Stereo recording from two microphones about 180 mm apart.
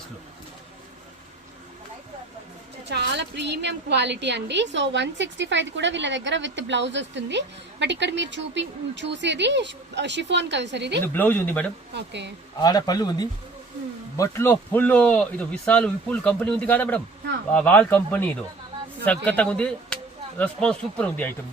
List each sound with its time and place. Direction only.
2.9 s a woman's voice: 70° right (ahead or behind)
11.0 s speech: 10° left (ahead or behind)
11.9 s a woman's voice: 75° right (ahead or behind)
12.6 s a man's voice: 20° left (ahead or behind)